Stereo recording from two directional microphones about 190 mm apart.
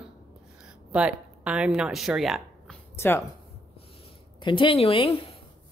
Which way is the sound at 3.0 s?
10° left (ahead or behind).